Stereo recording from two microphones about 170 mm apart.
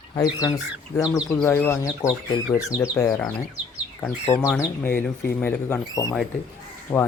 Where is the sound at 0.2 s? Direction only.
20° left (ahead or behind).